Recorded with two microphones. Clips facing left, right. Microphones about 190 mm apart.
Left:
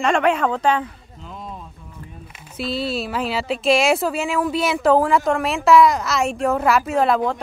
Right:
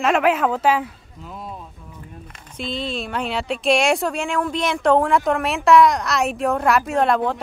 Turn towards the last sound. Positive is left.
turn(degrees=0)  # may be behind; listen again after turning